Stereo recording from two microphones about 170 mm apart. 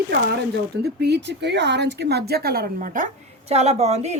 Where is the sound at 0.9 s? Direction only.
80° right; by 3.1 s 50° right (ahead or behind).